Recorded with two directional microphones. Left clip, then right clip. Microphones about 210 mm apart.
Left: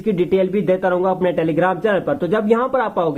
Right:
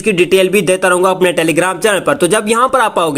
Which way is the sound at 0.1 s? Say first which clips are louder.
Right 7 dB; 20° right (ahead or behind).